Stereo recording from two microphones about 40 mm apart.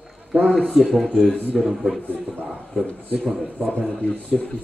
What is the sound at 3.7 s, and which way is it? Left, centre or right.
Speech, left.